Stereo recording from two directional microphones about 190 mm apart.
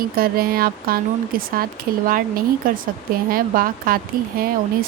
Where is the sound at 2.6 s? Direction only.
50° right (ahead or behind).